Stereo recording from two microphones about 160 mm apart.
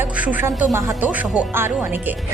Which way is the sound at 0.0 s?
10° right (ahead or behind).